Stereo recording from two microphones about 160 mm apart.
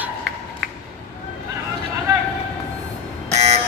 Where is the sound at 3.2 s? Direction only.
45° right (ahead or behind).